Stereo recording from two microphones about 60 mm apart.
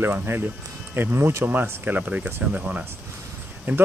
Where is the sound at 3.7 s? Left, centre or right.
Right.